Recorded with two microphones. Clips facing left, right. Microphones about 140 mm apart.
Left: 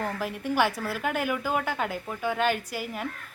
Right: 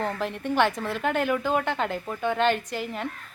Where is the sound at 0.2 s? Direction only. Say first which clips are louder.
Right 1 dB; 5° left (ahead or behind).